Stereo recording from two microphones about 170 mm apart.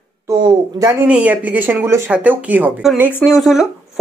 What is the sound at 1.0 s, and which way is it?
Speech, 5° right (ahead or behind).